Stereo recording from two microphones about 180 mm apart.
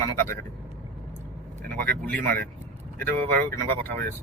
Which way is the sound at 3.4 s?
15° left (ahead or behind).